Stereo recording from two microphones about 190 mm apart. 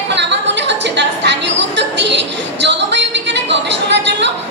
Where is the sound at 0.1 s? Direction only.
65° right (ahead or behind).